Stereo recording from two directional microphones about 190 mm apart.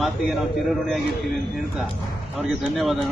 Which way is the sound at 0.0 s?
Centre (ahead or behind).